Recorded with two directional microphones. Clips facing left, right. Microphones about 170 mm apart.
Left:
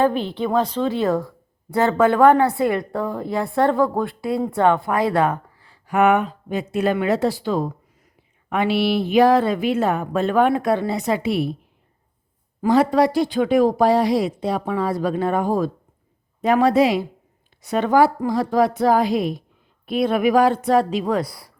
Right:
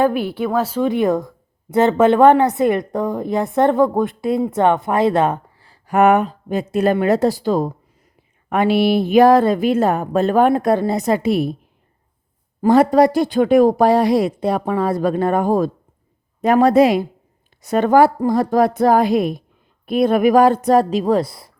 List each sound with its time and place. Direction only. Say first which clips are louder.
0.0 s a woman's voice: right 2 dB; 10° right (ahead or behind)
5.6 s a woman's voice: right 3 dB; 40° right (ahead or behind)
12.6 s a woman's voice: right 4 dB; 50° right (ahead or behind); by 21.5 s 25° right (ahead or behind)